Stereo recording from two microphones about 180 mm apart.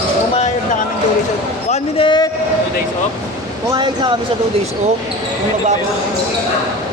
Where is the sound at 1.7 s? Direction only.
30° left (ahead or behind).